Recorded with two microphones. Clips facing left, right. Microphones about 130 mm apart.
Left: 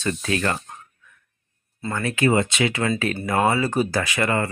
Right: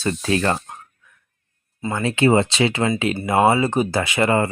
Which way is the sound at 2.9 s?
15° right (ahead or behind).